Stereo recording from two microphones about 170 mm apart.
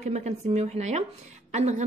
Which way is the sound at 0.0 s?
40° right (ahead or behind).